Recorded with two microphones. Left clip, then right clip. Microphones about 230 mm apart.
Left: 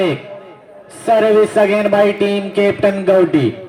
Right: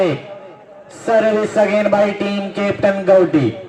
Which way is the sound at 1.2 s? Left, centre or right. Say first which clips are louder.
Left 2 dB; left.